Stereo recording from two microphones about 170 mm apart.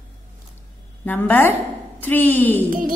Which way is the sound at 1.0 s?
10° left (ahead or behind).